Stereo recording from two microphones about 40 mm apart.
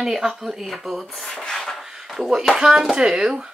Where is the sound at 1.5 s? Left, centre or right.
Centre.